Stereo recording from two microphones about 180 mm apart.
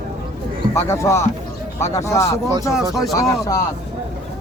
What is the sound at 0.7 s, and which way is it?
Speech, 15° left (ahead or behind).